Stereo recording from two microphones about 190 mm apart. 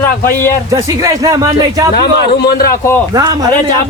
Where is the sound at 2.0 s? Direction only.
55° left (ahead or behind).